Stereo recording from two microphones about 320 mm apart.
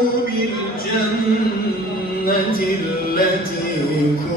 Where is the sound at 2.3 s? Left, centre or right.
Left.